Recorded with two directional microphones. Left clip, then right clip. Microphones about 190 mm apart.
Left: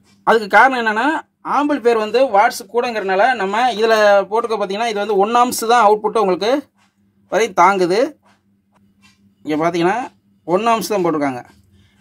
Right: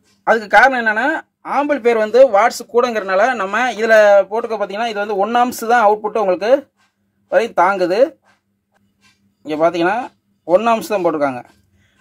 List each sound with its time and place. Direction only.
0.2 s speech: 10° left (ahead or behind); by 3.3 s 20° right (ahead or behind)
3.8 s speech: 5° right (ahead or behind)
9.6 s speech: 5° right (ahead or behind)